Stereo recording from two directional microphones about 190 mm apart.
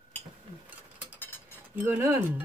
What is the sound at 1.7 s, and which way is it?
Speech, 10° right (ahead or behind).